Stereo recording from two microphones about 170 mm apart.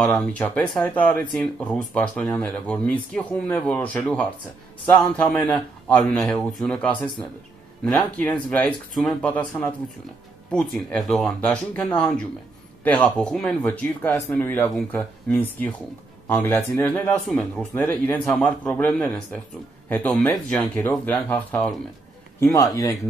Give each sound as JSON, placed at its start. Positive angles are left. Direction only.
{"t": 0.4, "sound": "speech", "side_deg": 5}
{"t": 22.4, "sound": "speech", "side_deg": 20}